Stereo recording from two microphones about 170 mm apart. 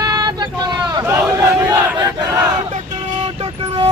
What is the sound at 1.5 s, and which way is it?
Battle cry, 15° right (ahead or behind).